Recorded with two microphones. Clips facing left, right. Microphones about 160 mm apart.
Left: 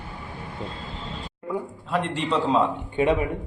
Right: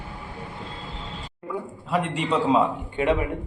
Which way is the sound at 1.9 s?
5° right (ahead or behind).